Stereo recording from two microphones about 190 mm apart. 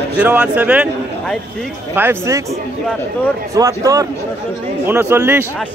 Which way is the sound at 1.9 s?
10° right (ahead or behind).